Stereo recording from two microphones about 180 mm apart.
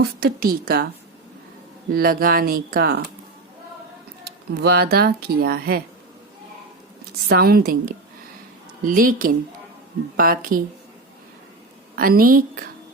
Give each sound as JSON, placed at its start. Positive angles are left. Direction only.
{"t": 0.0, "sound": "speech", "side_deg": -60}
{"t": 1.9, "sound": "speech", "side_deg": -55}
{"t": 4.3, "sound": "speech", "side_deg": -60}
{"t": 7.3, "sound": "a woman's voice", "side_deg": -60}
{"t": 11.9, "sound": "a woman's voice", "side_deg": -55}